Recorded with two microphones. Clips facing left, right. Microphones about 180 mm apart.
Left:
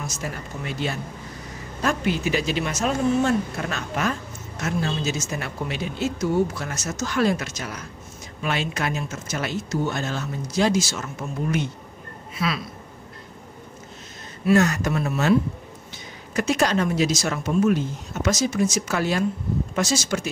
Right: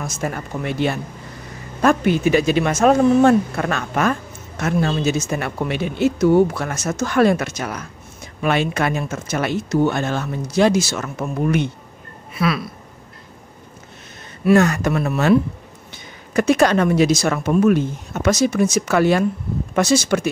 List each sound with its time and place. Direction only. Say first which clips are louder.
0.0 s speech: right 6 dB; 55° right (ahead or behind)
14.4 s speech: right 4 dB; 55° right (ahead or behind)
16.3 s speech: right 6 dB; 55° right (ahead or behind)